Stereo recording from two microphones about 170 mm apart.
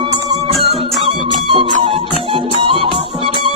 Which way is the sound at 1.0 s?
30° right (ahead or behind).